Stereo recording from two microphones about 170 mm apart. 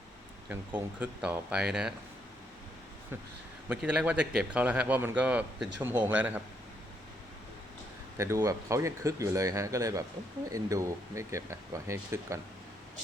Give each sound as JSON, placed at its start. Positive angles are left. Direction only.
{"t": 0.4, "sound": "a man's voice", "side_deg": -10}
{"t": 3.7, "sound": "a man's voice", "side_deg": -5}
{"t": 8.2, "sound": "a man's voice", "side_deg": -15}